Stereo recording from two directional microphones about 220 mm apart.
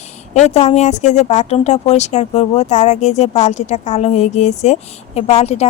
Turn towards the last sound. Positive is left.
turn(degrees=30)  # may be behind; listen again after turning